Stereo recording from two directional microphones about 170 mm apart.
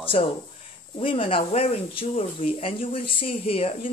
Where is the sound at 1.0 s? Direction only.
30° left (ahead or behind).